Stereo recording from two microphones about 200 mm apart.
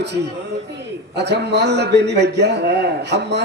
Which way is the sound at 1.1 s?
55° right (ahead or behind).